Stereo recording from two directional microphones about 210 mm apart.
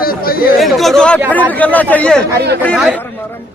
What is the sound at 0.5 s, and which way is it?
A man's voice, centre (ahead or behind).